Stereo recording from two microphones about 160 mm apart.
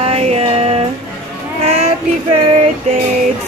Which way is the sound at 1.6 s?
40° right (ahead or behind).